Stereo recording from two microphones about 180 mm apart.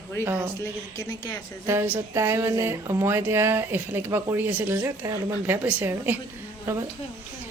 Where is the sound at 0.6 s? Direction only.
15° left (ahead or behind).